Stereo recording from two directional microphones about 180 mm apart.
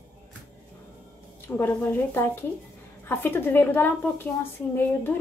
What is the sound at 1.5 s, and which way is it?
Speech, 10° left (ahead or behind).